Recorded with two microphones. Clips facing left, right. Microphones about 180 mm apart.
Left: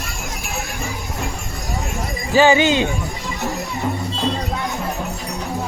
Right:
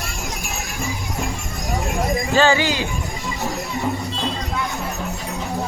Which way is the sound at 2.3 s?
15° left (ahead or behind).